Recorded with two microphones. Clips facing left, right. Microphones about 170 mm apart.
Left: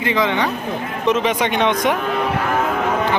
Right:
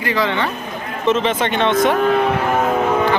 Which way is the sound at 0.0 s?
20° left (ahead or behind).